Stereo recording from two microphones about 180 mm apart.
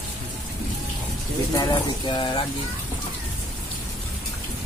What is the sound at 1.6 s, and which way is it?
Speech, 25° left (ahead or behind).